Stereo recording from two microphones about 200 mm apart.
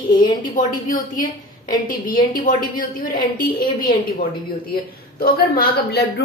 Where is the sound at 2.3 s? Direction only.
45° left (ahead or behind).